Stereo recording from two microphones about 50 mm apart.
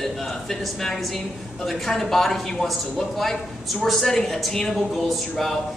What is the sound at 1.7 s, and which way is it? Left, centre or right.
A man's voice, centre.